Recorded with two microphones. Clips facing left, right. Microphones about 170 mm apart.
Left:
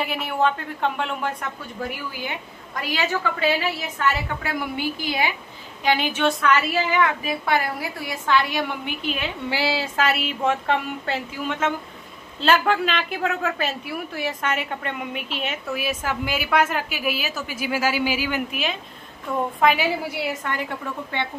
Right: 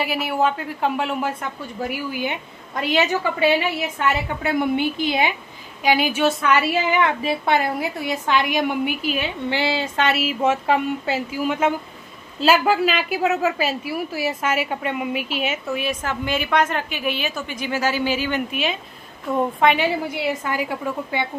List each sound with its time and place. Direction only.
0.0 s a woman's voice: 5° right (ahead or behind)
2.1 s a woman's voice: 20° right (ahead or behind)
5.9 s a woman's voice: 10° right (ahead or behind)
15.8 s a woman's voice: 5° left (ahead or behind); by 21.3 s 10° right (ahead or behind)